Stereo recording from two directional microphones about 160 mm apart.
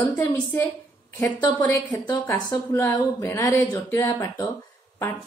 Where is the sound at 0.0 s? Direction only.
10° left (ahead or behind).